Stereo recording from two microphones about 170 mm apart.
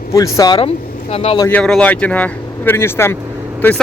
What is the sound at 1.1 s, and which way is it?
Speech, 35° left (ahead or behind).